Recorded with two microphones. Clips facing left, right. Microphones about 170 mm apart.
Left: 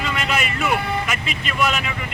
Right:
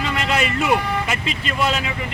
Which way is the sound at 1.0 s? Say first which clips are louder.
Right 2 dB; 30° right (ahead or behind).